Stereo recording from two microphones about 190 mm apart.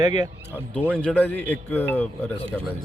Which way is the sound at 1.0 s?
5° left (ahead or behind).